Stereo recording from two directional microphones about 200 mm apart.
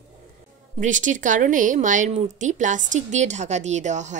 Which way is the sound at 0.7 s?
40° right (ahead or behind).